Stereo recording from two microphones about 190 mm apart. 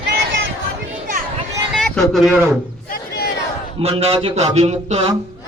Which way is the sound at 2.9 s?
55° left (ahead or behind).